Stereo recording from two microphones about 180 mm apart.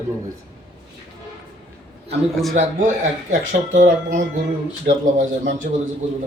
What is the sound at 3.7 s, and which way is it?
A man's voice, 45° right (ahead or behind).